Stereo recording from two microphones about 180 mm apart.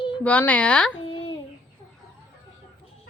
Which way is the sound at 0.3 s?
10° left (ahead or behind).